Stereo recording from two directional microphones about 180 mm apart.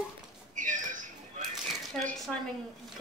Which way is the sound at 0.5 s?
45° right (ahead or behind).